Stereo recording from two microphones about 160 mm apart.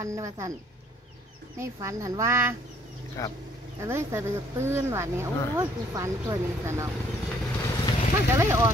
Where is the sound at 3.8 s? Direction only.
15° right (ahead or behind).